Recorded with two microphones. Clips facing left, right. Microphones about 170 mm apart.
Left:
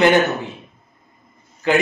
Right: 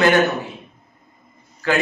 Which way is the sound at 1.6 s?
20° left (ahead or behind).